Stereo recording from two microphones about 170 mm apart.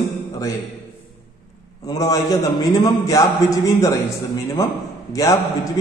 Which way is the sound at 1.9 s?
20° left (ahead or behind).